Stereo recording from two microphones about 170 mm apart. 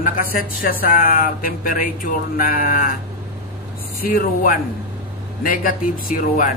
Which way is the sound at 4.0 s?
60° left (ahead or behind).